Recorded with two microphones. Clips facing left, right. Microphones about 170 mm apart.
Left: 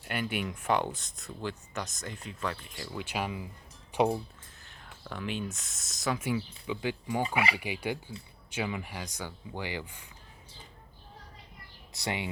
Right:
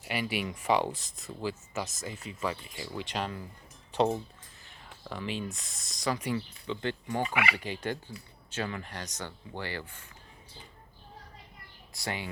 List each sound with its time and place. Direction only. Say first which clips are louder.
0.0 s speech: even; centre (ahead or behind)
3.1 s speech: left 3 dB; 10° left (ahead or behind)
4.6 s speech: right 1 dB; centre (ahead or behind)
7.3 s speech: left 1 dB; 30° left (ahead or behind)
7.5 s speech: left 1 dB; 10° left (ahead or behind)
11.9 s speech: left 2 dB; 20° left (ahead or behind)